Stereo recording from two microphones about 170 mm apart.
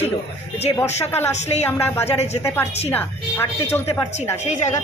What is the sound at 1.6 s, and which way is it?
Speech, 15° left (ahead or behind).